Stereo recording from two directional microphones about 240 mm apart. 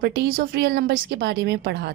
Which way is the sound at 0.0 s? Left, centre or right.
Right.